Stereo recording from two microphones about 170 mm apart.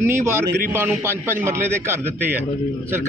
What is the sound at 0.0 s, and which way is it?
A man's voice, 15° right (ahead or behind).